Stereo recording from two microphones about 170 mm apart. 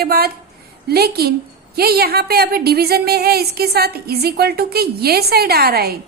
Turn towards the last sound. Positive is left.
turn(degrees=-65)  # may be behind; listen again after turning